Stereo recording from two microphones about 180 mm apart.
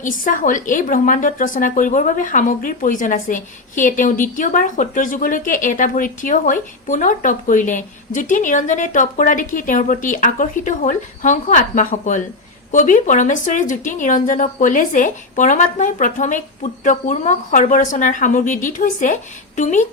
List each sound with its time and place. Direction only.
0.0 s a woman's voice: 45° left (ahead or behind)